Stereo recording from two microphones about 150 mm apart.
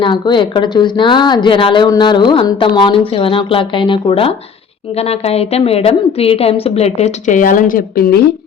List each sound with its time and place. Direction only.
0.0 s a woman's voice: 30° left (ahead or behind); by 8.2 s 80° left